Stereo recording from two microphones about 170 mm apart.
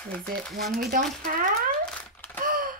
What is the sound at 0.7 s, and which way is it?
Speech, 60° right (ahead or behind).